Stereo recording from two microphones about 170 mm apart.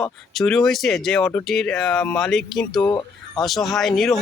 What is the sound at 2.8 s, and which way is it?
Speech, 25° left (ahead or behind).